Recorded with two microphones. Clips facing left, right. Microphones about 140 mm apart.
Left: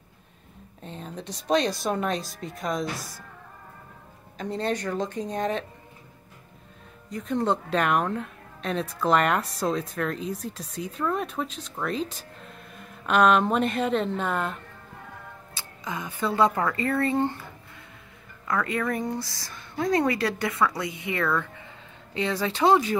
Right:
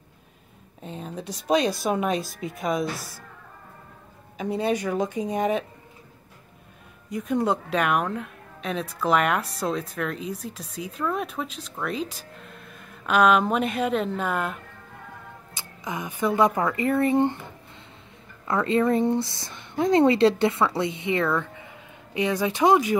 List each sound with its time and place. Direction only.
0.8 s a woman's voice: 5° right (ahead or behind)
4.4 s speech: 10° right (ahead or behind)
7.1 s a woman's voice: 10° right (ahead or behind)
15.5 s speech: 20° right (ahead or behind)
18.5 s speech: 25° right (ahead or behind)